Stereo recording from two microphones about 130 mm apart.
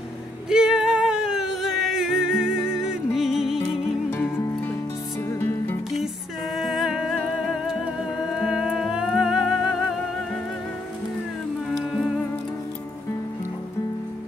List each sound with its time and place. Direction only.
0.5 s music: 5° right (ahead or behind)
5.3 s music: 20° left (ahead or behind)
6.5 s humming: centre (ahead or behind)
8.2 s music: 5° right (ahead or behind)
11.7 s music: centre (ahead or behind)